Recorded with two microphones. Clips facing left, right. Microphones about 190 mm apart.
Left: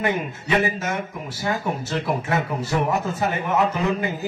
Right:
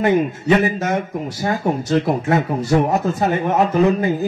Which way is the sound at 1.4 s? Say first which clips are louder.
Right 4 dB; 50° right (ahead or behind).